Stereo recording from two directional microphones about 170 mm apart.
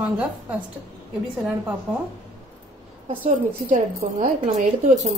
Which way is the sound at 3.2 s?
50° right (ahead or behind).